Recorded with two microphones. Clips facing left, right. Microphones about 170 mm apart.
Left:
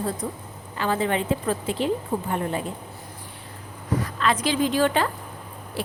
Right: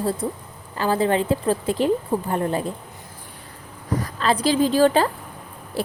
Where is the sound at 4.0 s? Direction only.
35° right (ahead or behind).